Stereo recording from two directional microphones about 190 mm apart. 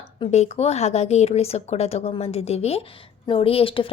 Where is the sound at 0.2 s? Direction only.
35° left (ahead or behind).